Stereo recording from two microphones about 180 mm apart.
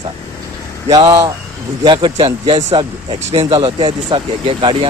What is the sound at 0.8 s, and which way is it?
A man's voice, 20° right (ahead or behind).